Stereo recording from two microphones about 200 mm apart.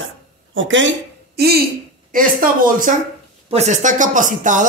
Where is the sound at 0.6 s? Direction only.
70° right (ahead or behind).